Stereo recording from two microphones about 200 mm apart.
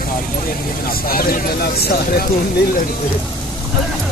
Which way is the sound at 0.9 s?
45° left (ahead or behind).